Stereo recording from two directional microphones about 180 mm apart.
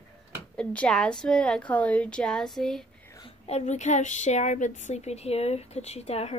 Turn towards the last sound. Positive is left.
turn(degrees=35)  # may be behind; listen again after turning